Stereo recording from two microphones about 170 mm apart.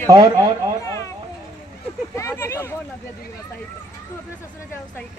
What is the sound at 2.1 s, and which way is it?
Speech, 15° left (ahead or behind).